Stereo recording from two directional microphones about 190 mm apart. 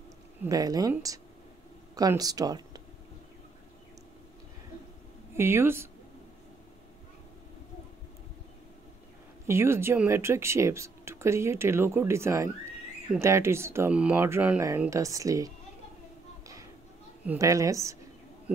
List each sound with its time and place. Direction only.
0.4 s speech: 20° right (ahead or behind)
5.3 s speech: 10° right (ahead or behind)
9.5 s speech: 15° right (ahead or behind)
17.3 s speech: 15° right (ahead or behind)